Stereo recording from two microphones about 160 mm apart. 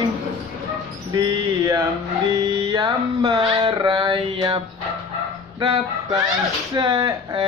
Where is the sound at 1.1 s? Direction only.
20° right (ahead or behind).